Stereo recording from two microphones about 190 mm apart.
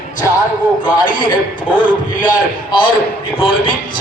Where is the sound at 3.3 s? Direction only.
25° left (ahead or behind).